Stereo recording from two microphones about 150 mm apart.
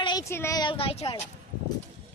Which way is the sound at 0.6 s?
35° left (ahead or behind).